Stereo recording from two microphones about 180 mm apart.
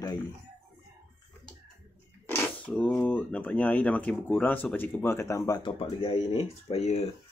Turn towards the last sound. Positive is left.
turn(degrees=35)  # may be behind; listen again after turning